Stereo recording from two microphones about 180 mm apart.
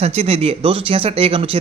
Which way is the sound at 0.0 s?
35° right (ahead or behind).